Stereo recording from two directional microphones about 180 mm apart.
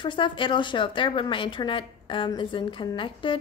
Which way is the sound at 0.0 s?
25° left (ahead or behind).